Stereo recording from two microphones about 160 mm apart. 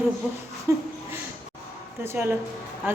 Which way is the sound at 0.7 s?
20° right (ahead or behind).